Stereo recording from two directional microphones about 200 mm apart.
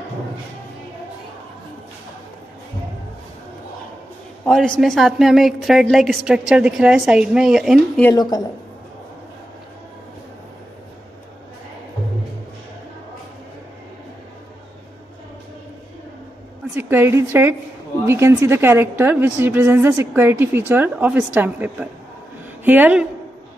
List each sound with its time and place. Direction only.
4.5 s a woman's voice: centre (ahead or behind)
8.0 s a woman's voice: 20° left (ahead or behind)
16.7 s a woman's voice: 10° right (ahead or behind)